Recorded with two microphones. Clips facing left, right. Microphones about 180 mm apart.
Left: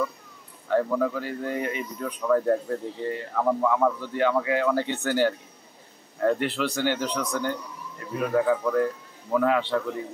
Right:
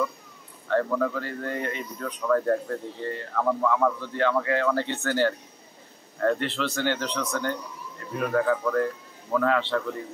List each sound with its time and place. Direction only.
0.7 s speech: 10° left (ahead or behind)